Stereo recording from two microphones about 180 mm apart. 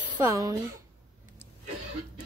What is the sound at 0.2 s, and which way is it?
Speech, 20° right (ahead or behind).